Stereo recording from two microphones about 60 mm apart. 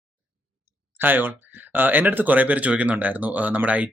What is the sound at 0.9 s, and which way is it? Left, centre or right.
Speech, right.